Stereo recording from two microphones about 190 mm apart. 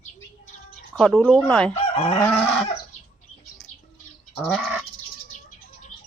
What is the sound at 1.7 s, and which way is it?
Fowl, 30° left (ahead or behind).